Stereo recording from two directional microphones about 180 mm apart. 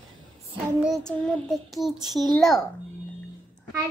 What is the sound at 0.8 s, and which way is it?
Child singing, centre (ahead or behind).